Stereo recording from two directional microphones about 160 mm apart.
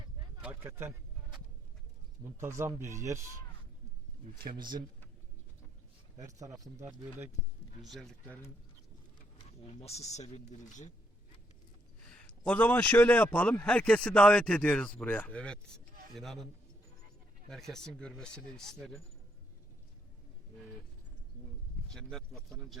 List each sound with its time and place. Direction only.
0.4 s a sound: 15° right (ahead or behind)
2.4 s speech: 15° right (ahead or behind)
4.5 s speech: 25° right (ahead or behind)
6.2 s speech: 20° right (ahead or behind)
7.8 s speech: centre (ahead or behind)
9.7 s speech: 45° left (ahead or behind)
12.5 s a man's voice: 10° left (ahead or behind)
17.5 s speech: 5° left (ahead or behind)
21.8 s speech: 5° left (ahead or behind)